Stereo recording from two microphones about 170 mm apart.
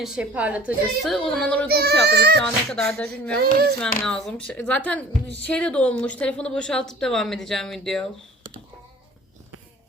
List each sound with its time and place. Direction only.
0.0 s a woman's voice: 5° right (ahead or behind)
1.6 s speech: 70° right (ahead or behind)
2.4 s a woman's voice: 5° left (ahead or behind)
3.3 s a sound: 65° right (ahead or behind)
3.8 s a woman's voice: 5° left (ahead or behind)